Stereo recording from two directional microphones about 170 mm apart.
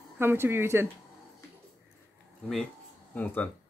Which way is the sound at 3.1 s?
10° left (ahead or behind).